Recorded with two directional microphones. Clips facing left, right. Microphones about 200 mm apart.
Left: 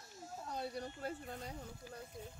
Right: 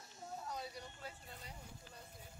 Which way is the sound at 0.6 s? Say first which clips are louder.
Left 6 dB; 55° left (ahead or behind).